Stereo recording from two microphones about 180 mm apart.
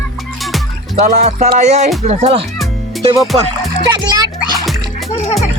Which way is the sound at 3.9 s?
20° right (ahead or behind).